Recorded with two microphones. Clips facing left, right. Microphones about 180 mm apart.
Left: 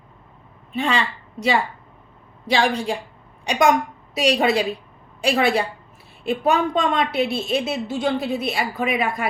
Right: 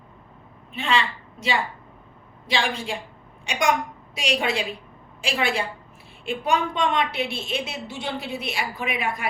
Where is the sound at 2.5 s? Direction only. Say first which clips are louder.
Left 6 dB; 40° left (ahead or behind).